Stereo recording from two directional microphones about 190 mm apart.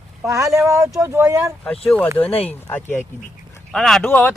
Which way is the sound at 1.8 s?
5° left (ahead or behind).